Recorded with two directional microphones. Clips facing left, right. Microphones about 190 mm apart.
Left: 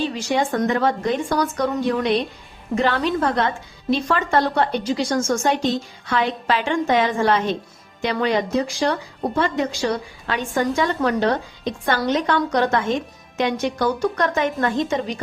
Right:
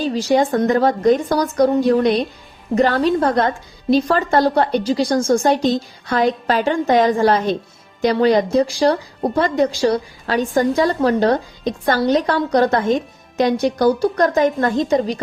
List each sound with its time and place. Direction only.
0.0 s speech: 35° right (ahead or behind)